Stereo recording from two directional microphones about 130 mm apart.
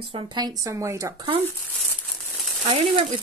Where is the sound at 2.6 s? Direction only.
50° right (ahead or behind).